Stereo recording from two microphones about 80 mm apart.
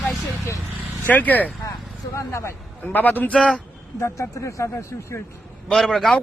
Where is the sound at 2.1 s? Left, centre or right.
Left.